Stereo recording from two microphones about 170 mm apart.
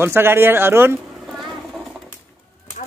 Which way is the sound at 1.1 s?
Centre (ahead or behind).